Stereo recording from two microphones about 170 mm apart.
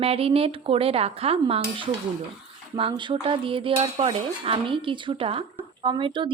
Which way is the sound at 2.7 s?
30° right (ahead or behind).